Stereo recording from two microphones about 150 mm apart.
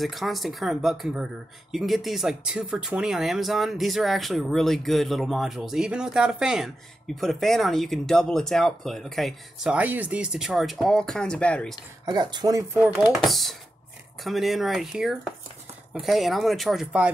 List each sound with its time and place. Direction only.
0.0 s speech: centre (ahead or behind)
12.1 s speech: 30° right (ahead or behind)
13.1 s speech: centre (ahead or behind)